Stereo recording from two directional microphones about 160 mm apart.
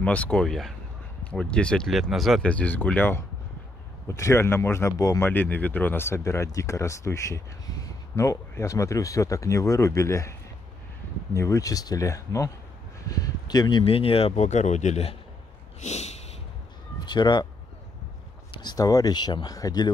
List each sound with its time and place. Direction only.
0.0 s speech: 10° left (ahead or behind)
11.3 s speech: 20° left (ahead or behind); by 15.1 s 45° left (ahead or behind)
15.8 s a sound: 45° left (ahead or behind)
17.0 s speech: 30° left (ahead or behind)
18.6 s speech: 25° left (ahead or behind)